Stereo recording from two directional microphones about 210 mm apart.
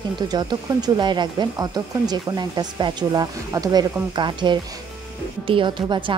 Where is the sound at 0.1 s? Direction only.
20° right (ahead or behind).